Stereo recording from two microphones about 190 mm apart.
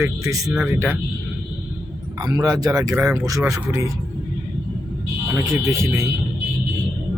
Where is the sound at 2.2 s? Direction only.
20° right (ahead or behind).